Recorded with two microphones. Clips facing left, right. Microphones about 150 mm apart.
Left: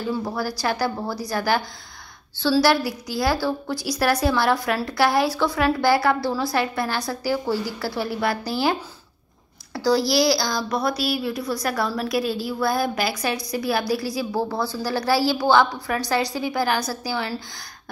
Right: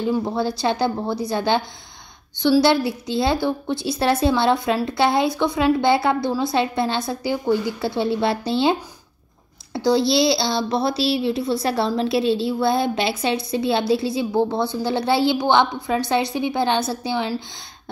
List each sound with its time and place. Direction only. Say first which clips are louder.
0.0 s a woman's voice: right 4 dB; 20° right (ahead or behind)